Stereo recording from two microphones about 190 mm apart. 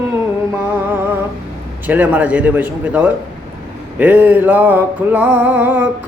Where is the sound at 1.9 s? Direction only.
10° right (ahead or behind).